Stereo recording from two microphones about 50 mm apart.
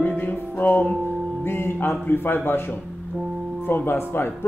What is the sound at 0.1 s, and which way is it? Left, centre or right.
Music, left.